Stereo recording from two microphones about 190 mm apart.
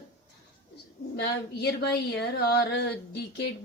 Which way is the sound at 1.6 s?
60° left (ahead or behind).